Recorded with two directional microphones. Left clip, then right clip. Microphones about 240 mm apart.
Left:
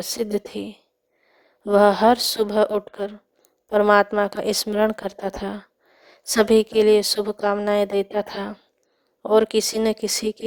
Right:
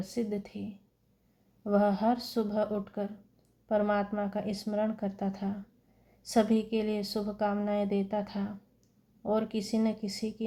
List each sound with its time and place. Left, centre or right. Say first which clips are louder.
0.0 s a woman's voice: left 10 dB; left